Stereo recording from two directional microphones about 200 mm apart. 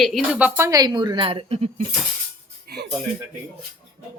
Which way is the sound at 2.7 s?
50° right (ahead or behind).